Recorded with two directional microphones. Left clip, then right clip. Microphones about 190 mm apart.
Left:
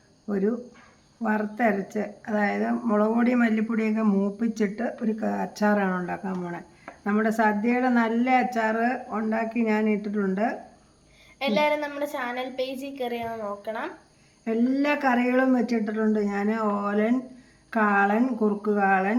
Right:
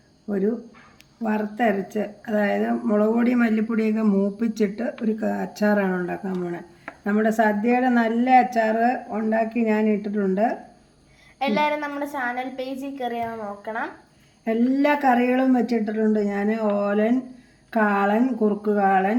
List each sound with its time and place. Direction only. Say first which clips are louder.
0.3 s a woman's voice: right 2 dB; 10° left (ahead or behind)
11.5 s a woman's voice: even; 15° left (ahead or behind)
11.9 s speech: right 3 dB; centre (ahead or behind)